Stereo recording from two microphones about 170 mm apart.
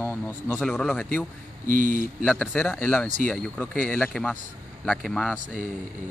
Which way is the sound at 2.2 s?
10° left (ahead or behind).